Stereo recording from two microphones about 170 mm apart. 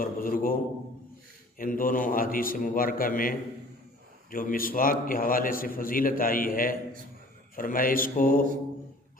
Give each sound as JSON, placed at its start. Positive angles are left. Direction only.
{"t": 0.0, "sound": "a man's voice", "side_deg": 55}
{"t": 1.5, "sound": "a man's voice", "side_deg": 55}